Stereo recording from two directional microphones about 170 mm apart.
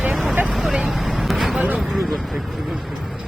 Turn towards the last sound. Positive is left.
turn(degrees=0)  # may be behind; listen again after turning